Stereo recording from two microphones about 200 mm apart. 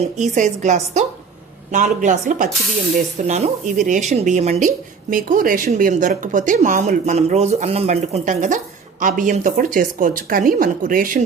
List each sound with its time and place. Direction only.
0.2 s speech: 35° right (ahead or behind)